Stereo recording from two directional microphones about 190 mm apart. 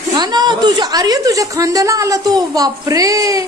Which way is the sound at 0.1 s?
20° right (ahead or behind).